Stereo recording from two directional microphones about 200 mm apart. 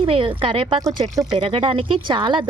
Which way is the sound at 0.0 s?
25° right (ahead or behind).